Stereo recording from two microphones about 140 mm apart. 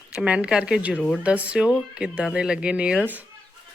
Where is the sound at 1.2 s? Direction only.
10° right (ahead or behind).